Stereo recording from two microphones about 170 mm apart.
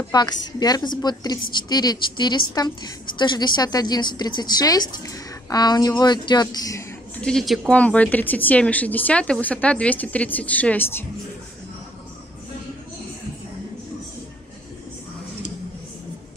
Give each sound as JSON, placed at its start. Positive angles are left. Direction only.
{"t": 0.1, "sound": "a woman's voice", "side_deg": 25}
{"t": 7.2, "sound": "speech", "side_deg": 5}